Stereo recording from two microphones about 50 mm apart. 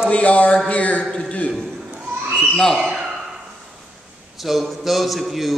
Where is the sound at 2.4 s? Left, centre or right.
Centre.